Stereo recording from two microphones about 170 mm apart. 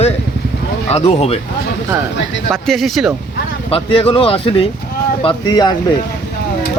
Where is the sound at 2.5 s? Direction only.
Centre (ahead or behind).